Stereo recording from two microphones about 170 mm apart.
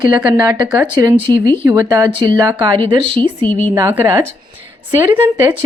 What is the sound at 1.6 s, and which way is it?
Speech, 20° right (ahead or behind).